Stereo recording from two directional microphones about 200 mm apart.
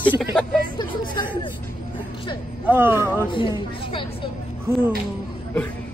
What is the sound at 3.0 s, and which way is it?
Speech, 10° left (ahead or behind).